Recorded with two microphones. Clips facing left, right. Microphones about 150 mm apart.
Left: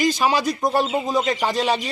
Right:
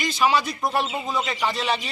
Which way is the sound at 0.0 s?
35° left (ahead or behind).